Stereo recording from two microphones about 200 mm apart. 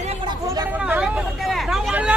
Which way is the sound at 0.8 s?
5° right (ahead or behind).